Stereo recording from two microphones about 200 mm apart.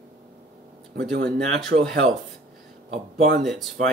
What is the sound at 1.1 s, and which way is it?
Speech, 60° right (ahead or behind).